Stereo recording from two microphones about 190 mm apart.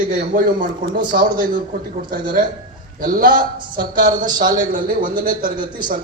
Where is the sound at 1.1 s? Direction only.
55° right (ahead or behind).